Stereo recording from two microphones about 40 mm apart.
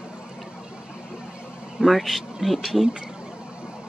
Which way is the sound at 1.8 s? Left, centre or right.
Centre.